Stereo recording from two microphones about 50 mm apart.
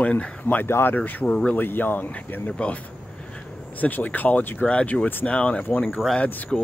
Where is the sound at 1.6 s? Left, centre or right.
Left.